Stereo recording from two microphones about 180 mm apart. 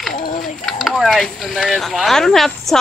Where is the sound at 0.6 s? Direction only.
Centre (ahead or behind).